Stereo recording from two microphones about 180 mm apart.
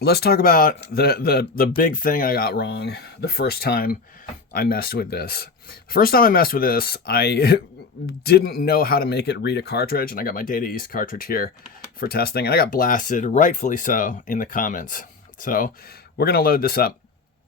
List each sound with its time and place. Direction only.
0.0 s speech: 60° left (ahead or behind)